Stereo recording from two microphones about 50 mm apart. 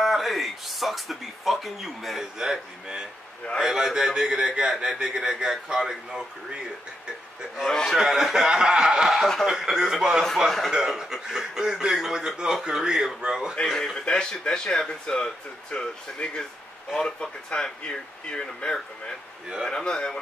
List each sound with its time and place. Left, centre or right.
0.0 s speech: centre
2.3 s a man's voice: centre
7.7 s speech: centre
8.0 s a man's voice: centre
9.1 s a man's voice: centre
9.5 s a man's voice: centre
10.7 s a man's voice: centre
13.7 s speech: centre